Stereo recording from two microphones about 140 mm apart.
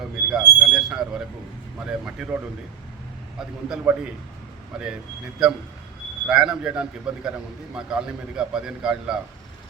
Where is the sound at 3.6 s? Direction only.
5° right (ahead or behind).